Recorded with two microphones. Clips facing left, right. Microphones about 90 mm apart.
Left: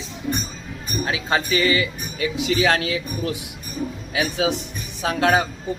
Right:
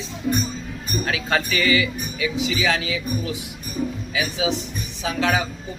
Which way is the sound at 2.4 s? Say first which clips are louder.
Left 6 dB; 55° left (ahead or behind).